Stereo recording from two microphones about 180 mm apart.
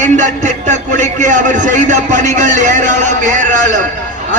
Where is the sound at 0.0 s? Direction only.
45° right (ahead or behind).